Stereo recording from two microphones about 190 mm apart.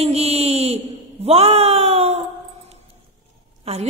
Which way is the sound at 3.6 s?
35° right (ahead or behind).